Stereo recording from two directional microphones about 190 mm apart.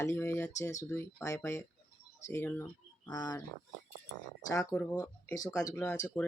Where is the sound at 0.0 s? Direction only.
15° left (ahead or behind).